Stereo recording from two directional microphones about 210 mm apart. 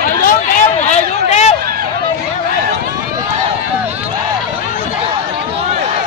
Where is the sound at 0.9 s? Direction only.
30° left (ahead or behind).